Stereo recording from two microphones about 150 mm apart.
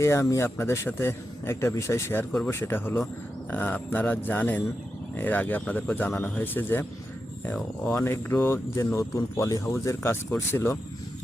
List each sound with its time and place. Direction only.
0.0 s speech: 20° left (ahead or behind)
7.9 s speech: 15° left (ahead or behind)